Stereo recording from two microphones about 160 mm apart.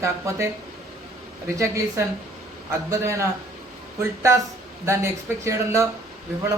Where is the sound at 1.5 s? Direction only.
20° right (ahead or behind).